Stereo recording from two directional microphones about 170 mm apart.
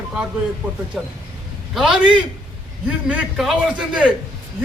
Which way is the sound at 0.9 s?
Centre (ahead or behind).